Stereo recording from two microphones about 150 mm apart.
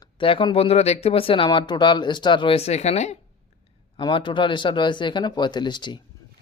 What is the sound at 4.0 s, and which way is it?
A man's voice, 35° left (ahead or behind).